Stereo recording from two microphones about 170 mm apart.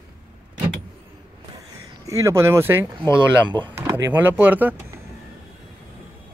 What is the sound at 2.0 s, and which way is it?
Speech, 20° right (ahead or behind).